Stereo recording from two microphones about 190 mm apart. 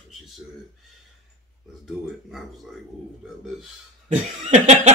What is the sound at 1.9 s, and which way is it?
Speech, centre (ahead or behind).